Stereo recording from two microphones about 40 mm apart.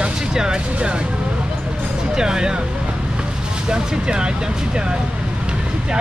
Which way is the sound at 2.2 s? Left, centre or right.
Centre.